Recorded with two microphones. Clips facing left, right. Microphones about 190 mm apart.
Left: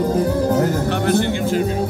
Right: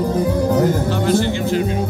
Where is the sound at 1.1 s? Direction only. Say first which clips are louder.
Right 1 dB; 55° left (ahead or behind).